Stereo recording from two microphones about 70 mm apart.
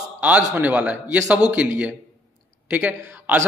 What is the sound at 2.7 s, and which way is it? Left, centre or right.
Speech, right.